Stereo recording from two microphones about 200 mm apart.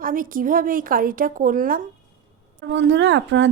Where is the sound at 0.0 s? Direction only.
45° right (ahead or behind).